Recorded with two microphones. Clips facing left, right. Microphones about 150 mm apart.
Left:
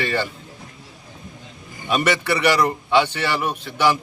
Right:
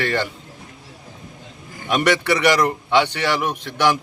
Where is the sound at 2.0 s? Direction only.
10° left (ahead or behind).